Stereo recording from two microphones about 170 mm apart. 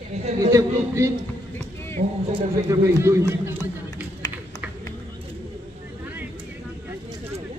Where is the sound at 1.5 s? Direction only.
15° left (ahead or behind).